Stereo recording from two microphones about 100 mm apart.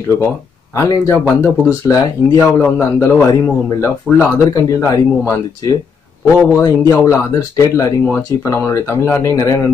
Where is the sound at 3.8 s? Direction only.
20° left (ahead or behind).